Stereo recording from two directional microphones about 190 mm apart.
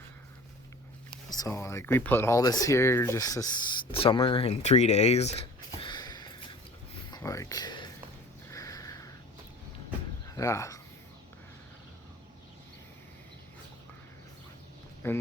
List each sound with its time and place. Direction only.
1.3 s speech: 15° left (ahead or behind); by 5.3 s 35° left (ahead or behind)
5.8 s a sound: 20° left (ahead or behind)
7.1 s speech: 15° left (ahead or behind)
8.4 s a sound: 15° left (ahead or behind)
10.2 s speech: 15° left (ahead or behind)
15.0 s speech: 10° left (ahead or behind)